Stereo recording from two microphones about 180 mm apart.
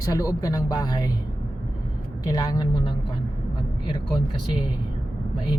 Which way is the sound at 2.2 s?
20° left (ahead or behind).